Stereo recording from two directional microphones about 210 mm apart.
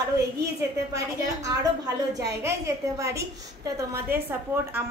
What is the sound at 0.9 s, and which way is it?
A woman's voice, 15° right (ahead or behind).